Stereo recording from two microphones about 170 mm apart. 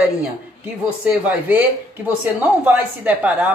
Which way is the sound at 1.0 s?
10° right (ahead or behind).